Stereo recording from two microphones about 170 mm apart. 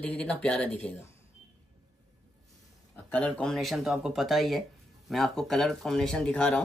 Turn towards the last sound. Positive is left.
turn(degrees=5)  # may be behind; listen again after turning